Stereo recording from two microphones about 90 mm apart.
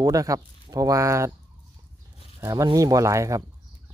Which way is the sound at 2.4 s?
45° right (ahead or behind).